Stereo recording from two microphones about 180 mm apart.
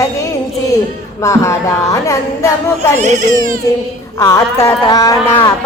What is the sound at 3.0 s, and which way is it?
Speech, 40° right (ahead or behind).